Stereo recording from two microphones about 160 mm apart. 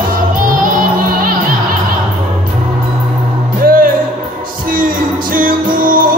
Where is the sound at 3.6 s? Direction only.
60° right (ahead or behind).